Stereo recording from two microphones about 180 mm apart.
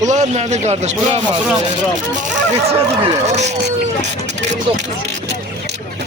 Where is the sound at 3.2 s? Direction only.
40° right (ahead or behind).